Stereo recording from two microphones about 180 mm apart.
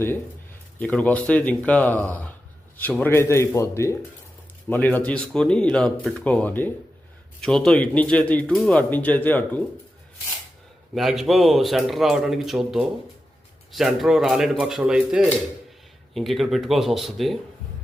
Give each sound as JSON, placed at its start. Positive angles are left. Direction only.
{"t": 0.8, "sound": "speech", "side_deg": 10}
{"t": 10.9, "sound": "speech", "side_deg": 0}